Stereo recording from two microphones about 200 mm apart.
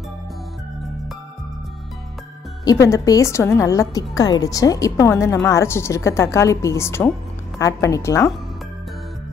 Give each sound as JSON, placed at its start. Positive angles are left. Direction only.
{"t": 2.6, "sound": "a woman's voice", "side_deg": 15}